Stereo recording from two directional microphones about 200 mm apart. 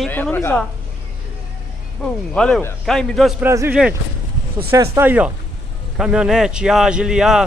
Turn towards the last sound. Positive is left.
turn(degrees=-5)  # may be behind; listen again after turning